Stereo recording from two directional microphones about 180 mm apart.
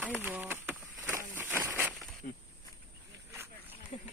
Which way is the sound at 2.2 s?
50° left (ahead or behind).